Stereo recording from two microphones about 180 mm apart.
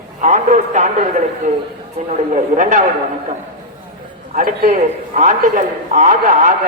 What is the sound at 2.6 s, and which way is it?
Speech, 45° right (ahead or behind).